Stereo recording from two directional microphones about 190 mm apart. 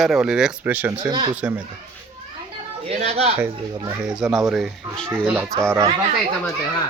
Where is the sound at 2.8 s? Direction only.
30° right (ahead or behind).